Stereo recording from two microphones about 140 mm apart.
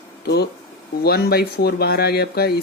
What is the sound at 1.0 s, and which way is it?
Speech, 90° left.